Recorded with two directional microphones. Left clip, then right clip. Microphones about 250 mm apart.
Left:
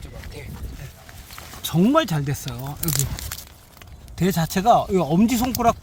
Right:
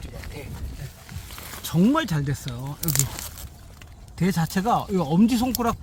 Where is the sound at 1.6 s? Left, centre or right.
Left.